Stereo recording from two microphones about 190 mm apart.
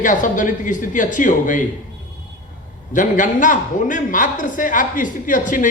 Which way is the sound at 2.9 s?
45° left (ahead or behind).